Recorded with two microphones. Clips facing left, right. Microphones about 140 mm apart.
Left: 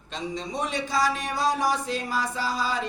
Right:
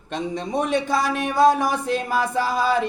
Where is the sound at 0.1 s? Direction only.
55° right (ahead or behind).